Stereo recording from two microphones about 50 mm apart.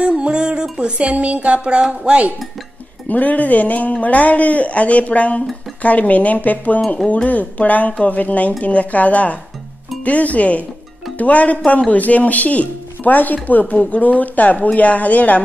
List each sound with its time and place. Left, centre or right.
0.2 s music: centre
3.1 s speech: left